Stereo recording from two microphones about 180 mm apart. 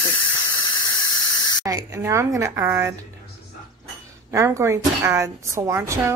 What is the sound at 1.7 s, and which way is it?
A woman's voice, 15° right (ahead or behind).